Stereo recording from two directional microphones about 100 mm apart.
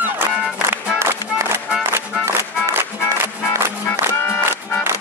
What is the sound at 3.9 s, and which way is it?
Music, 20° left (ahead or behind).